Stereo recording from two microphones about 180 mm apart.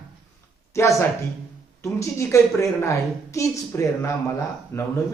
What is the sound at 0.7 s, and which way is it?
A woman's voice, 15° left (ahead or behind).